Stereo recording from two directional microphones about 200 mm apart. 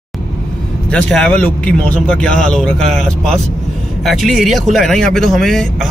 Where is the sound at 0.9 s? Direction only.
5° left (ahead or behind).